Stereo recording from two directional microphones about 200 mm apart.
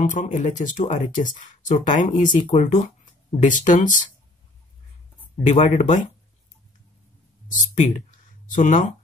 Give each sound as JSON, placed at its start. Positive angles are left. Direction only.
{"t": 0.0, "sound": "speech", "side_deg": 40}
{"t": 5.5, "sound": "speech", "side_deg": 40}
{"t": 7.4, "sound": "speech", "side_deg": 40}